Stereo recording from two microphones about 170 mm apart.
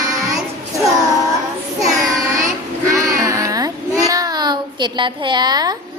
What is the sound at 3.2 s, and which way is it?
A child's voice, 20° right (ahead or behind).